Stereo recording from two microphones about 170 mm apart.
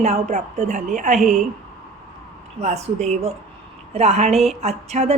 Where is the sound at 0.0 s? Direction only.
40° right (ahead or behind).